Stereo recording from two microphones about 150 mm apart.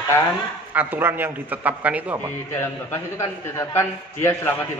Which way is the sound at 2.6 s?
15° left (ahead or behind).